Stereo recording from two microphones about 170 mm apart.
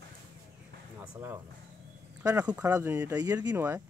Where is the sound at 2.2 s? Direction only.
10° right (ahead or behind).